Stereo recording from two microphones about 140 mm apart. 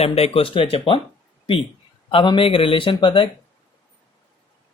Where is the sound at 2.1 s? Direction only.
40° left (ahead or behind).